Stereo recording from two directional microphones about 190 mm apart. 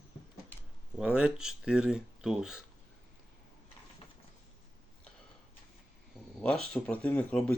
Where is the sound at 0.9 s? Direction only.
5° right (ahead or behind).